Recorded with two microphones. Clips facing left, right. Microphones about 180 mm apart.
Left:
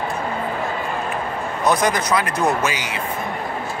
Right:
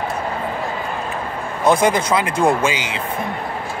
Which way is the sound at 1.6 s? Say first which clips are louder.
Right 4 dB; 25° right (ahead or behind).